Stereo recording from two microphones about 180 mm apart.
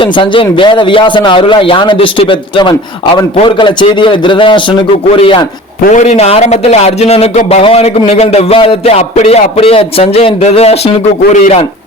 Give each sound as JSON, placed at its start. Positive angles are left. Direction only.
{"t": 0.0, "sound": "speech", "side_deg": 30}
{"t": 5.8, "sound": "a man's voice", "side_deg": 40}